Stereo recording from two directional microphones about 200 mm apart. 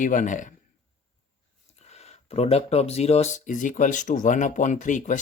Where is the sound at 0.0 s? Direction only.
40° left (ahead or behind).